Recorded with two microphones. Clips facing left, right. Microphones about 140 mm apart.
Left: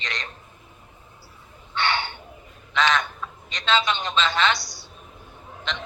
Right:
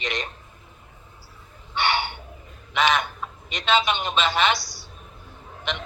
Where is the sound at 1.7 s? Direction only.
15° right (ahead or behind).